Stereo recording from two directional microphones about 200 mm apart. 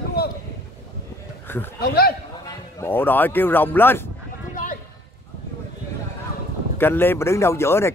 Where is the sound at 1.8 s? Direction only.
50° left (ahead or behind).